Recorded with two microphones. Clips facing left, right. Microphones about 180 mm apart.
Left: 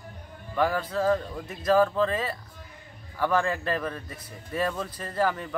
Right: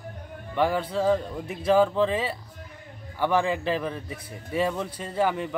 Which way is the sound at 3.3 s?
15° right (ahead or behind).